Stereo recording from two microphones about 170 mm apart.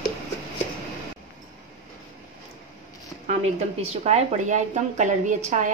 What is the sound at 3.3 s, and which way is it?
A woman's voice, 40° right (ahead or behind).